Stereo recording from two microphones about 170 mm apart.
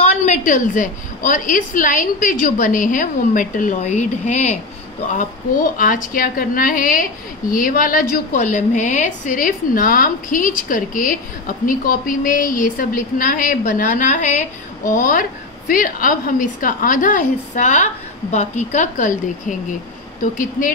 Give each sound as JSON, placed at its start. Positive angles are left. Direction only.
{"t": 0.0, "sound": "a woman's voice", "side_deg": 45}
{"t": 5.8, "sound": "a woman's voice", "side_deg": 55}